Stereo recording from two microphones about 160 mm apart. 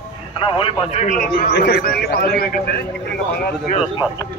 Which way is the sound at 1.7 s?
75° left (ahead or behind).